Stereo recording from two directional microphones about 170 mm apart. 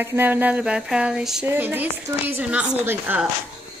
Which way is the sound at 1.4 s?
10° right (ahead or behind).